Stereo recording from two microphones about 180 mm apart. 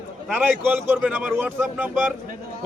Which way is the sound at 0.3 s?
10° right (ahead or behind).